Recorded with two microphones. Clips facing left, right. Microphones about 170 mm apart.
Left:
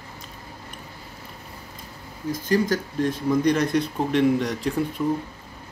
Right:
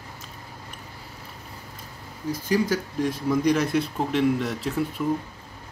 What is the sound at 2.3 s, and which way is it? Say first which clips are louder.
Speech: left 1 dB; 10° right (ahead or behind).